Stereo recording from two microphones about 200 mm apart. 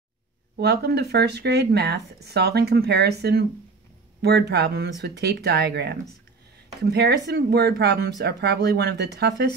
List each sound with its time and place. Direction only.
0.6 s speech: 55° right (ahead or behind)